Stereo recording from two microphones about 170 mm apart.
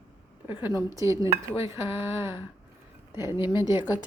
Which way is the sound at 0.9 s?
20° right (ahead or behind).